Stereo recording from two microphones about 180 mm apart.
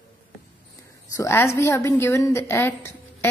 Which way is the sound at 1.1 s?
15° left (ahead or behind).